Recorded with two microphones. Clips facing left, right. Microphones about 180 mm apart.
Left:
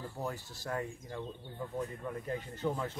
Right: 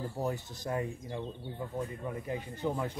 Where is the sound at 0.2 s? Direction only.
20° right (ahead or behind).